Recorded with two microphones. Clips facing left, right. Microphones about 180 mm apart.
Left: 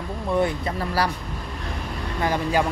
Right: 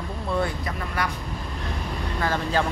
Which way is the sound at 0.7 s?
35° left (ahead or behind).